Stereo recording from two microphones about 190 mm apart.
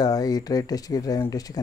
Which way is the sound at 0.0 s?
20° left (ahead or behind).